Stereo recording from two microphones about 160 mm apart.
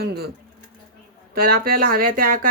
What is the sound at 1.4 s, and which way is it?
Speech, 65° right (ahead or behind).